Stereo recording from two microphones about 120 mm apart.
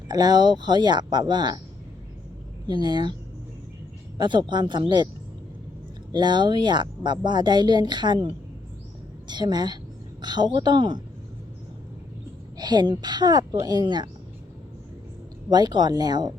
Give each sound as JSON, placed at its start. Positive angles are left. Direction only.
{"t": 0.1, "sound": "speech", "side_deg": -35}
{"t": 2.6, "sound": "speech", "side_deg": -35}
{"t": 4.2, "sound": "speech", "side_deg": -40}
{"t": 6.1, "sound": "speech", "side_deg": -40}
{"t": 12.5, "sound": "speech", "side_deg": -35}
{"t": 15.4, "sound": "speech", "side_deg": -35}